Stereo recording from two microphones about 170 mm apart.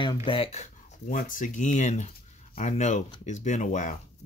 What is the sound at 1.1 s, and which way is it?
Speech, 50° left (ahead or behind).